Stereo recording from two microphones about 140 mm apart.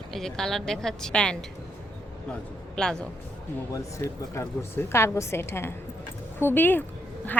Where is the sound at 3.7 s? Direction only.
20° left (ahead or behind).